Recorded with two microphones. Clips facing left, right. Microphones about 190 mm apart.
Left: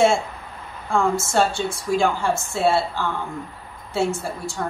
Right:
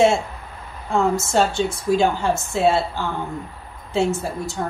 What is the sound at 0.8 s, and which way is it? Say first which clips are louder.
A woman's voice: right 1 dB; 20° right (ahead or behind).